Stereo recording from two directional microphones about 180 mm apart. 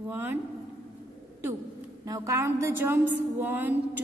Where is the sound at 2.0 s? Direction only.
20° right (ahead or behind).